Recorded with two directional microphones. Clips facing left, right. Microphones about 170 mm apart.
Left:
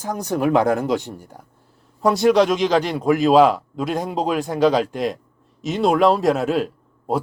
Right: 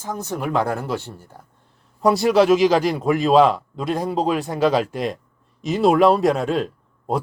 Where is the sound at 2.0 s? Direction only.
Centre (ahead or behind).